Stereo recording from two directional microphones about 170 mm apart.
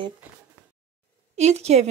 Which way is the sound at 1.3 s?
40° right (ahead or behind).